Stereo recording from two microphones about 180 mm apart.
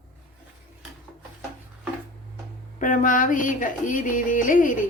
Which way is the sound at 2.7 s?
45° left (ahead or behind).